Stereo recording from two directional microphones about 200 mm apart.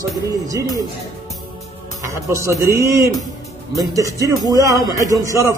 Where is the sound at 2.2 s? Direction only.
15° right (ahead or behind).